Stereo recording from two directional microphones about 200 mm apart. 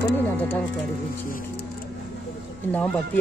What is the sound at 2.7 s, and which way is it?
Speech, 5° left (ahead or behind).